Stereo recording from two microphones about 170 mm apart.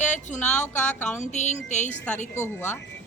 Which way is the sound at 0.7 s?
10° left (ahead or behind).